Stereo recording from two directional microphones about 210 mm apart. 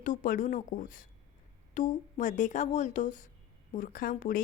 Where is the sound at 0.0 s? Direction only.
40° left (ahead or behind).